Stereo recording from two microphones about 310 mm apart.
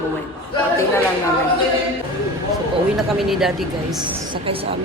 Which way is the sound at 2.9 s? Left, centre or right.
Centre.